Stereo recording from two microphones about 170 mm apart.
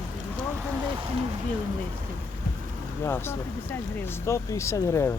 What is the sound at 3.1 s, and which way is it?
Speech, 15° left (ahead or behind).